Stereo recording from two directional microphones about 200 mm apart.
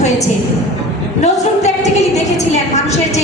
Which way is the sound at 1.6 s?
35° left (ahead or behind).